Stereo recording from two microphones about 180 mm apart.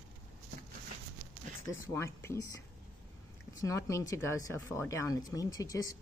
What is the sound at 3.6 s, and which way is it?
Speech, 15° left (ahead or behind).